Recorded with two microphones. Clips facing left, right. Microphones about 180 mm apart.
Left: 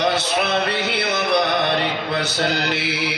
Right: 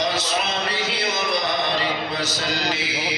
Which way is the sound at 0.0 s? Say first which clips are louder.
Left 4 dB; 60° left (ahead or behind).